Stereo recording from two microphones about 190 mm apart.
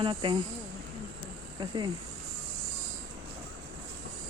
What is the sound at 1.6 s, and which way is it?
Snake, 25° right (ahead or behind).